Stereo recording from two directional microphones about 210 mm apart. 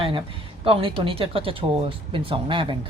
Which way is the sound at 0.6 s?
25° right (ahead or behind).